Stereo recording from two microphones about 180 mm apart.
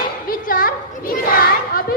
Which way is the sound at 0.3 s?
50° left (ahead or behind).